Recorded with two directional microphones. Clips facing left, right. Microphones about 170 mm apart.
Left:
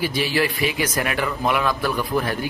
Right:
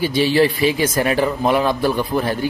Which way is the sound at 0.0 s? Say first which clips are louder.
Right 6 dB; 30° right (ahead or behind).